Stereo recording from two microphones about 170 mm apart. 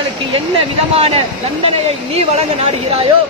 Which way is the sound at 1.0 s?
35° right (ahead or behind).